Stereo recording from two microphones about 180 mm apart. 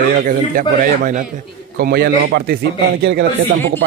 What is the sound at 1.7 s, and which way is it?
A man's voice, 55° right (ahead or behind).